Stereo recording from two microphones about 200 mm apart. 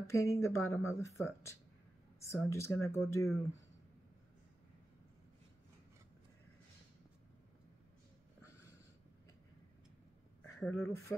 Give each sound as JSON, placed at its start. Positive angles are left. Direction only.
{"t": 0.0, "sound": "speech", "side_deg": 15}
{"t": 10.4, "sound": "speech", "side_deg": 5}